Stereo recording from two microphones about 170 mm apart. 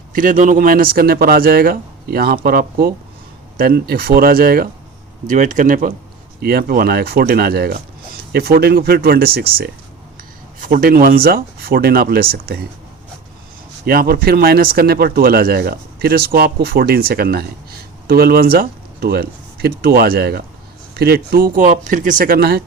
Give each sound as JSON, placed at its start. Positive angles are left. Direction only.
{"t": 0.1, "sound": "speech", "side_deg": -50}
{"t": 5.2, "sound": "speech", "side_deg": -50}
{"t": 6.4, "sound": "speech", "side_deg": -65}
{"t": 13.8, "sound": "speech", "side_deg": -60}